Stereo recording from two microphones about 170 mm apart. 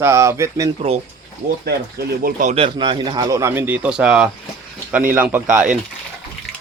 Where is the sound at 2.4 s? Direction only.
40° right (ahead or behind); by 5.6 s 10° right (ahead or behind).